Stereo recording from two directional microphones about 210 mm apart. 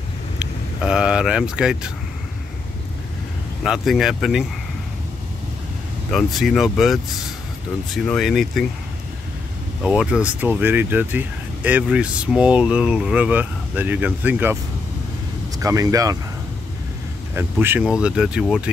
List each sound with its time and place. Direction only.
0.4 s speech: 5° right (ahead or behind)
3.6 s speech: centre (ahead or behind)
6.1 s speech: centre (ahead or behind)
9.8 s speech: 5° right (ahead or behind)
15.6 s speech: 15° right (ahead or behind)
17.4 s speech: 10° right (ahead or behind)